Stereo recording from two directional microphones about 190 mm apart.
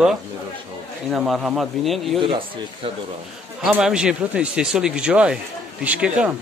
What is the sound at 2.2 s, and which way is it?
Speech, 30° right (ahead or behind).